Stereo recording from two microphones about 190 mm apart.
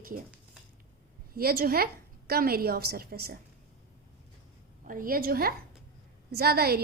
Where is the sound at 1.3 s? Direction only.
50° right (ahead or behind).